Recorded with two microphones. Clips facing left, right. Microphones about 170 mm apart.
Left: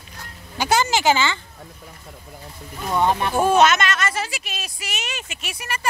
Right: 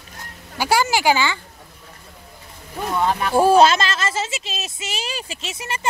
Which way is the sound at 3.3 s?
30° right (ahead or behind).